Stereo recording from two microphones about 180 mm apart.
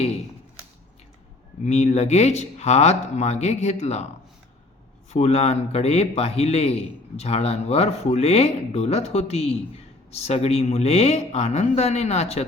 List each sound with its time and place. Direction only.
1.6 s a man's voice: 40° left (ahead or behind)
5.1 s a man's voice: 35° left (ahead or behind)